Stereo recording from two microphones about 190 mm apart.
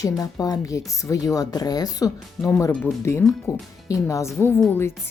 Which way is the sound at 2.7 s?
5° left (ahead or behind).